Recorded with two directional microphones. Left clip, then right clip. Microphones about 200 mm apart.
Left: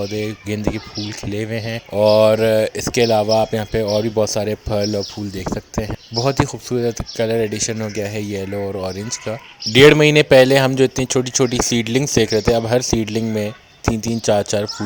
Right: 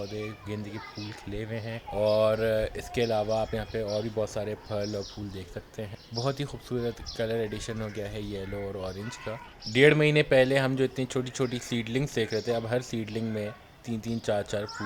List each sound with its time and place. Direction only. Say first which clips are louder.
0.1 s speech: left 13 dB; 40° left (ahead or behind)